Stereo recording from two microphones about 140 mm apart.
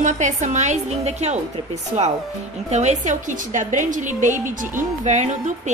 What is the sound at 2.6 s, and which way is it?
A woman's voice, 55° right (ahead or behind).